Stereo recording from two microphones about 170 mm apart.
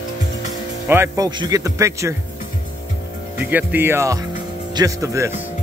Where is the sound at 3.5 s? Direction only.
10° right (ahead or behind).